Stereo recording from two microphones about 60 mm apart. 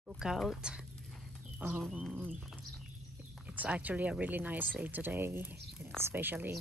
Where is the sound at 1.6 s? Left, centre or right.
Right.